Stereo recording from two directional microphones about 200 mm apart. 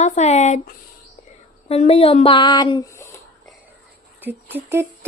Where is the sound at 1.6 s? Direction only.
30° left (ahead or behind); by 3.2 s 15° left (ahead or behind).